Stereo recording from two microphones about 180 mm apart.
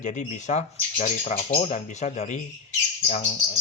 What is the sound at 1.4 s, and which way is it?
Speech, 55° left (ahead or behind).